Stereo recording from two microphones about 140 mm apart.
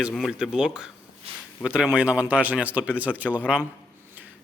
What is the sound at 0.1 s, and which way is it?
Speech, 5° right (ahead or behind).